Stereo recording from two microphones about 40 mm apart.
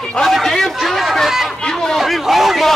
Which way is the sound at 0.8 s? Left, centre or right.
Centre.